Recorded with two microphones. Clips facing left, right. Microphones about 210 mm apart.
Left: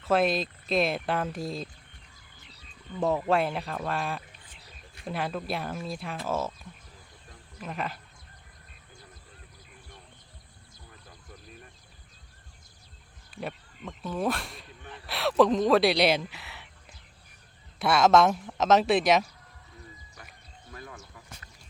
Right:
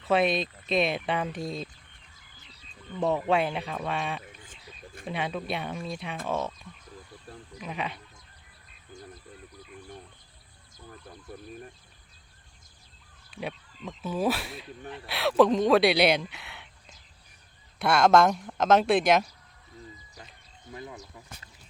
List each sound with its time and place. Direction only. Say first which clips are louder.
0.0 s speech: even; centre (ahead or behind)
3.2 s speech: even; centre (ahead or behind)
13.3 s speech: right 1 dB; centre (ahead or behind)
17.7 s speech: even; centre (ahead or behind)
20.1 s a sound: right 1 dB; 20° right (ahead or behind)